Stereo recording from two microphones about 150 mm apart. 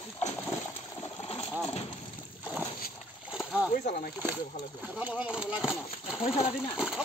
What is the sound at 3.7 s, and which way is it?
Speech, 60° left (ahead or behind).